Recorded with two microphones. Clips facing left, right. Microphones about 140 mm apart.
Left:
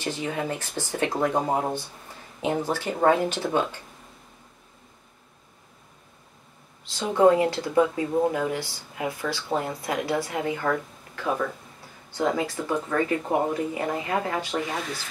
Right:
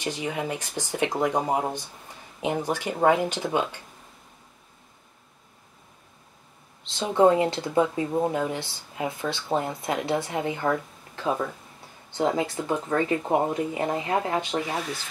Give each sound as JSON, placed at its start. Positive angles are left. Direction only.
{"t": 0.0, "sound": "speech", "side_deg": -15}
{"t": 6.8, "sound": "speech", "side_deg": -25}